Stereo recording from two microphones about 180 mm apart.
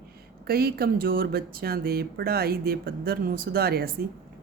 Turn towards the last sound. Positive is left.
turn(degrees=-60)  # may be behind; listen again after turning